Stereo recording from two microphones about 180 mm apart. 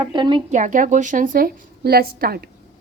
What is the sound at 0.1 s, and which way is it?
Speech, 25° right (ahead or behind).